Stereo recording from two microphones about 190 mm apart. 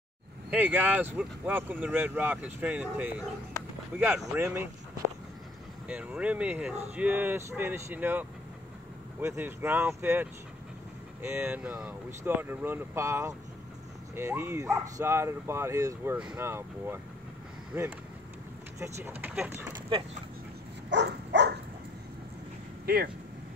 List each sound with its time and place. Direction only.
0.5 s speech: 10° right (ahead or behind)
5.9 s speech: 5° right (ahead or behind)
11.2 s speech: 10° right (ahead or behind)
18.8 s speech: 10° right (ahead or behind)
20.9 s a sound: 65° right (ahead or behind)
22.8 s speech: 55° right (ahead or behind)